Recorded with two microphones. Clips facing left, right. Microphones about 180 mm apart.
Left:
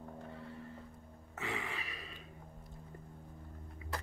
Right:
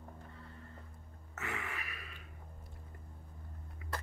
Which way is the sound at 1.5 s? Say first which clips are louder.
Left 2 dB; 25° left (ahead or behind).